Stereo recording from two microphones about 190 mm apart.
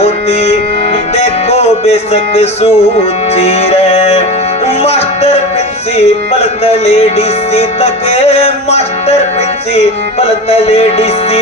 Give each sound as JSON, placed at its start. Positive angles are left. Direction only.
{"t": 0.0, "sound": "music", "side_deg": 35}
{"t": 6.4, "sound": "music", "side_deg": 35}